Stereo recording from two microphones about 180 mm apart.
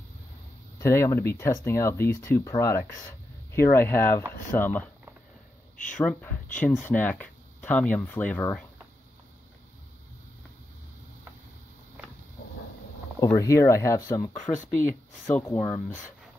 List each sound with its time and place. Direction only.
0.7 s speech: 15° left (ahead or behind)
5.9 s speech: 10° left (ahead or behind)
13.2 s speech: 15° left (ahead or behind)